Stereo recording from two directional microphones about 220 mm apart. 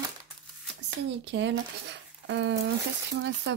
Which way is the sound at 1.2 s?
55° right (ahead or behind).